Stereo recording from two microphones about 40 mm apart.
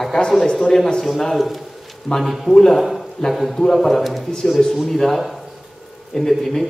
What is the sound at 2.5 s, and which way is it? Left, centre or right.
Speech, centre.